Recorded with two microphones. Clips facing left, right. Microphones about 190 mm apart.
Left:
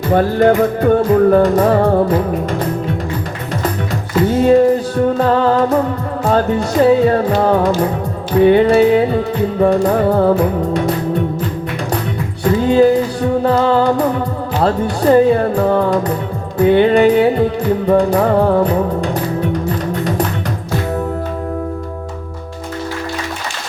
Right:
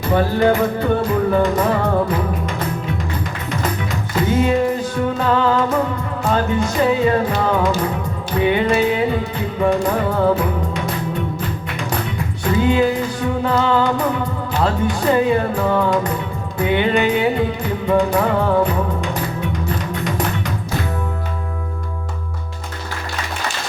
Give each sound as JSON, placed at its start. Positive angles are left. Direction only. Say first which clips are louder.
{"t": 0.1, "sound": "music", "louder": "left 4 dB", "side_deg": 45}
{"t": 4.3, "sound": "music", "louder": "left 7 dB", "side_deg": 35}
{"t": 12.6, "sound": "music", "louder": "left 7 dB", "side_deg": 35}